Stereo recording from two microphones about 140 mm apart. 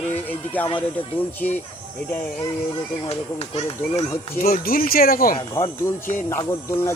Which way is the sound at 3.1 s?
45° left (ahead or behind).